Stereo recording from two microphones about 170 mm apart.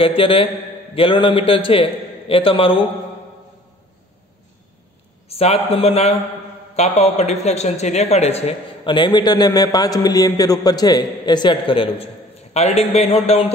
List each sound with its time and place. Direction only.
0.0 s speech: 35° left (ahead or behind)
5.3 s speech: 35° left (ahead or behind)